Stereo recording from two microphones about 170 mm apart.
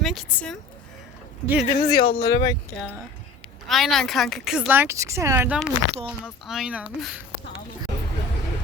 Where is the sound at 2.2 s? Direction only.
25° left (ahead or behind).